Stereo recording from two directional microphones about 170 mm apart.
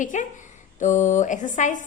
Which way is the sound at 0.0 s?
50° left (ahead or behind).